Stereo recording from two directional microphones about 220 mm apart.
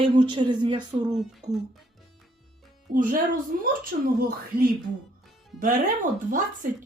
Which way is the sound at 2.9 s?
35° right (ahead or behind).